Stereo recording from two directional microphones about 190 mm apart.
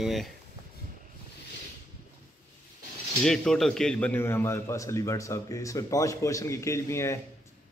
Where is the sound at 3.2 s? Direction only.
Centre (ahead or behind).